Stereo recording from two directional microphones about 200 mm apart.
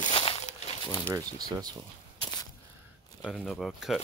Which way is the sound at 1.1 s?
20° right (ahead or behind).